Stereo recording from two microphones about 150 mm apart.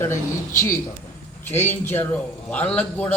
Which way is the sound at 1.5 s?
15° left (ahead or behind).